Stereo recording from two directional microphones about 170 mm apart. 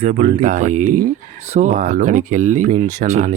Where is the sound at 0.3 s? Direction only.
50° right (ahead or behind).